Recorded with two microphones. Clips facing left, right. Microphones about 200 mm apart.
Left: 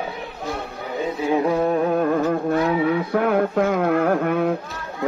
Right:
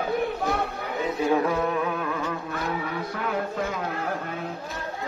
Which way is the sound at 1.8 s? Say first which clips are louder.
Left 9 dB; 50° left (ahead or behind).